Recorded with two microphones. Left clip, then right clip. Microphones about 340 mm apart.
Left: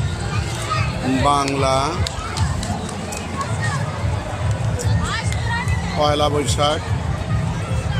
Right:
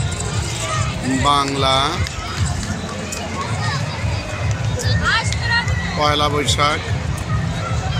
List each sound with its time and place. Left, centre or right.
1.2 s speech: centre
5.9 s speech: centre